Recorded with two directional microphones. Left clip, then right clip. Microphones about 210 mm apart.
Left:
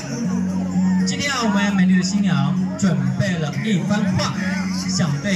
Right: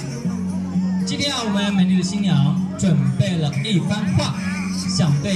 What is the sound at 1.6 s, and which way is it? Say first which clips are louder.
Speech: left 1 dB; 15° right (ahead or behind).